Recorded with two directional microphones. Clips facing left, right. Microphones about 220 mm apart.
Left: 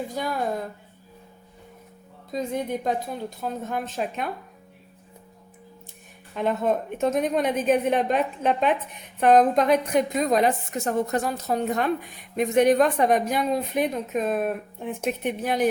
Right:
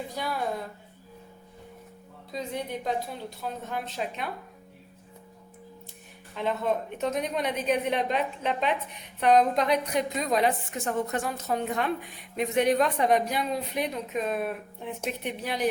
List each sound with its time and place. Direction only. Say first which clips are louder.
0.1 s speech: left 4 dB; 45° left (ahead or behind)
2.3 s speech: left 6 dB; 45° left (ahead or behind)
6.3 s speech: left 4 dB; 50° left (ahead or behind)